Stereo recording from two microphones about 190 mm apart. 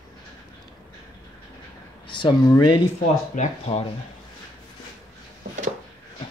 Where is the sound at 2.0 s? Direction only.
25° left (ahead or behind).